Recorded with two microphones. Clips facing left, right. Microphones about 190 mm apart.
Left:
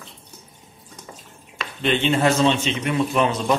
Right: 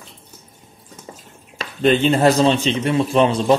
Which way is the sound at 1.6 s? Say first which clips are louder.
Right 6 dB; 40° right (ahead or behind).